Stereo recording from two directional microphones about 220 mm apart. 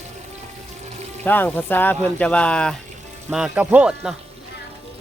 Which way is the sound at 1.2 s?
10° left (ahead or behind).